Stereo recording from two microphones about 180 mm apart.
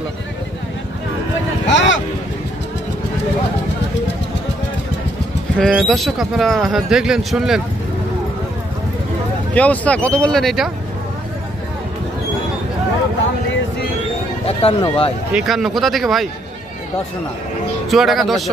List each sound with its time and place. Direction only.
1.7 s a sound: 85° left
5.6 s speech: centre (ahead or behind)
9.5 s speech: 10° left (ahead or behind)
14.6 s speech: 30° left (ahead or behind)
15.3 s speech: centre (ahead or behind)
17.8 s speech: centre (ahead or behind)